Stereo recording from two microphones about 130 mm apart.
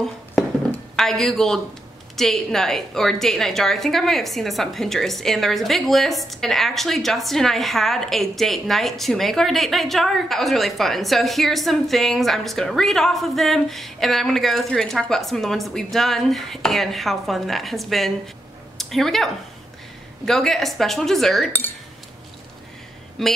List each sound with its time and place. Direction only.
0.9 s a woman's voice: 5° left (ahead or behind)
23.2 s a woman's voice: centre (ahead or behind)